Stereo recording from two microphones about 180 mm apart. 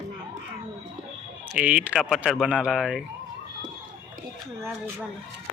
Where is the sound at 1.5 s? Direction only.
5° right (ahead or behind).